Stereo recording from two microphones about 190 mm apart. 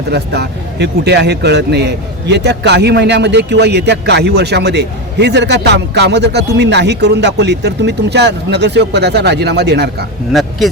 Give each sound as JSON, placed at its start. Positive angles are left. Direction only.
{"t": 0.1, "sound": "a man's voice", "side_deg": -60}